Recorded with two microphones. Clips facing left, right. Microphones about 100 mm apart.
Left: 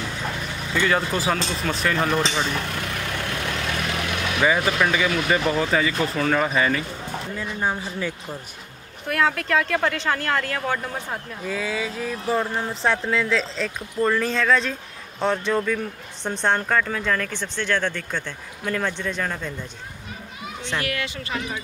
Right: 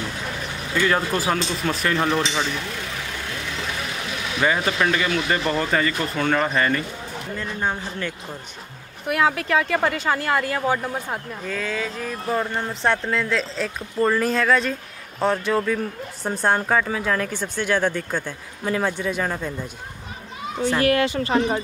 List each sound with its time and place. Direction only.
0.7 s speech: centre (ahead or behind)
3.3 s vehicle: 60° left (ahead or behind)
4.4 s a man's voice: 5° left (ahead or behind)
9.0 s a woman's voice: 5° right (ahead or behind)
11.4 s a woman's voice: 10° left (ahead or behind); by 19.5 s 10° right (ahead or behind)
20.8 s speech: 35° right (ahead or behind)